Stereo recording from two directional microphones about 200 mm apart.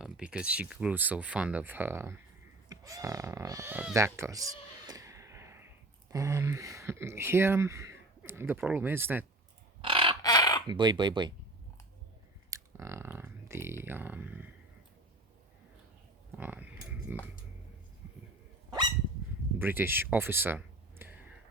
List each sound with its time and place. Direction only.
0.0 s speech: 5° right (ahead or behind)
4.9 s a sound: 15° right (ahead or behind)
8.5 s speech: 10° right (ahead or behind)
9.8 s bird: 25° right (ahead or behind)
10.2 s chicken: 20° left (ahead or behind)
10.7 s speech: 20° right (ahead or behind)
12.5 s a sound: 15° right (ahead or behind)
16.3 s speech: 10° right (ahead or behind)
19.5 s speech: 10° right (ahead or behind)